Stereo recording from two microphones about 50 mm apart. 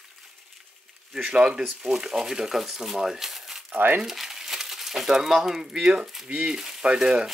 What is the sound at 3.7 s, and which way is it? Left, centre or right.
Speech, right.